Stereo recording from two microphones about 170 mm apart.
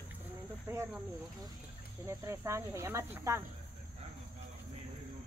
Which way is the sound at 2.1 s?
15° right (ahead or behind).